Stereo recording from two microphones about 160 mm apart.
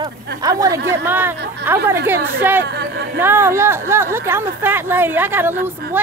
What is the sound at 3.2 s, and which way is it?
Speech, 15° right (ahead or behind).